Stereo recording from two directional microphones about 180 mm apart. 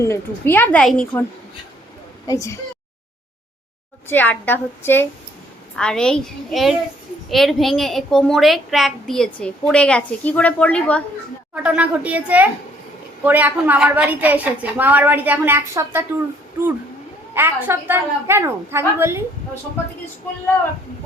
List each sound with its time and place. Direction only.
0.0 s a woman's voice: 15° left (ahead or behind)
2.2 s speech: 20° left (ahead or behind)
4.1 s a woman's voice: 10° left (ahead or behind)
11.5 s a woman's voice: 5° right (ahead or behind)
17.3 s a woman's voice: 10° right (ahead or behind)